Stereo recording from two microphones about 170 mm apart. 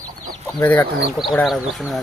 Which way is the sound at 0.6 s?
10° left (ahead or behind).